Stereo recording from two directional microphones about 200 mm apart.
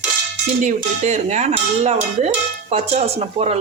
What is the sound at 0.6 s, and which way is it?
Speech, 35° right (ahead or behind).